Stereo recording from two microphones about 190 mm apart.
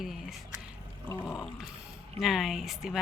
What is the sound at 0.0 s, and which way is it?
Speech, centre (ahead or behind).